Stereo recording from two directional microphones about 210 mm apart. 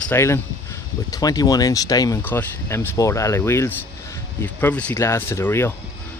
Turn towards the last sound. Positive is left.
turn(degrees=10)  # may be behind; listen again after turning